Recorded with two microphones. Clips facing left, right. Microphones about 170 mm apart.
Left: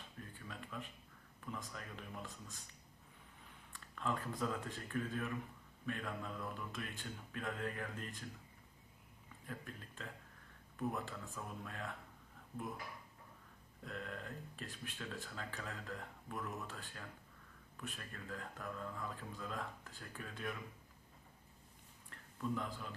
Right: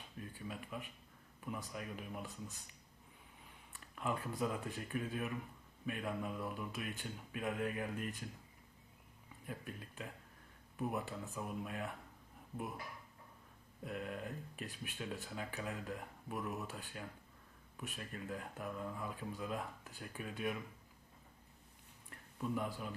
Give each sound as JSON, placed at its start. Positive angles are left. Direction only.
{"t": 0.3, "sound": "speech", "side_deg": -15}
{"t": 3.9, "sound": "speech", "side_deg": -15}
{"t": 9.5, "sound": "speech", "side_deg": -15}
{"t": 13.8, "sound": "speech", "side_deg": -15}
{"t": 22.1, "sound": "a sound", "side_deg": -15}